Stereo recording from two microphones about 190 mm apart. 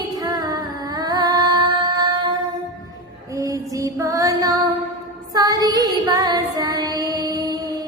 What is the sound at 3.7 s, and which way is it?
Female singing, 15° right (ahead or behind).